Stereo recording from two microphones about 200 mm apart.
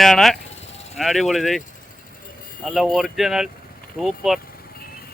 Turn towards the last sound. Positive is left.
turn(degrees=0)  # may be behind; listen again after turning